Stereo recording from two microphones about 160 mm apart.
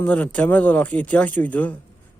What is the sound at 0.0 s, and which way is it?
Speech, 10° left (ahead or behind).